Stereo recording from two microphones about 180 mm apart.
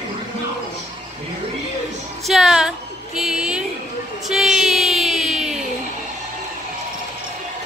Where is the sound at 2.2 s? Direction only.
Centre (ahead or behind).